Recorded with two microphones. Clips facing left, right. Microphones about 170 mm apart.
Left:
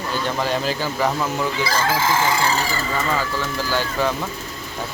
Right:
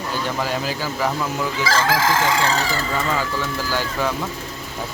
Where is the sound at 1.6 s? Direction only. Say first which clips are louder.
Right 4 dB; 90° right.